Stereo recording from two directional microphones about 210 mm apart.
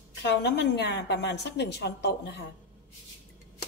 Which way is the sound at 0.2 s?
55° left (ahead or behind).